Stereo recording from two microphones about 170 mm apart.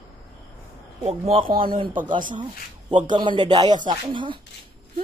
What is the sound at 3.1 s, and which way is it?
Speech, 25° right (ahead or behind).